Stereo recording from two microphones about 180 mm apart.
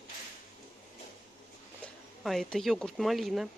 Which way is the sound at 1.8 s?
Centre (ahead or behind).